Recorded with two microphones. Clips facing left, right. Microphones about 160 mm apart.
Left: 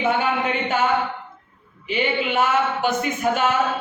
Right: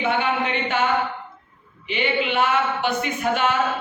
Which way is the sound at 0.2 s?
40° left (ahead or behind).